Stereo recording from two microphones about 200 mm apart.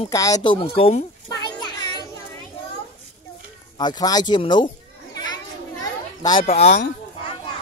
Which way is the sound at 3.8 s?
20° left (ahead or behind).